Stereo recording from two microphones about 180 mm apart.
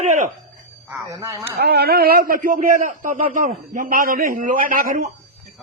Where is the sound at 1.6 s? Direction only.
60° right (ahead or behind).